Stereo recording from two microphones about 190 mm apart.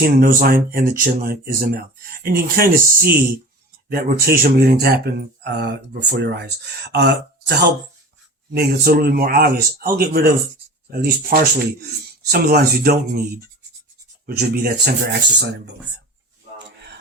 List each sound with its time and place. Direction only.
0.0 s speech: 50° right (ahead or behind); by 15.7 s 65° right (ahead or behind)